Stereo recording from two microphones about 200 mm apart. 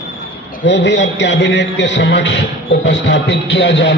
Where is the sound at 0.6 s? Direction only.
60° left (ahead or behind).